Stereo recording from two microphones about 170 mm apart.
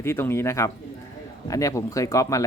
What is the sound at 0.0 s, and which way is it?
Speech, 15° left (ahead or behind).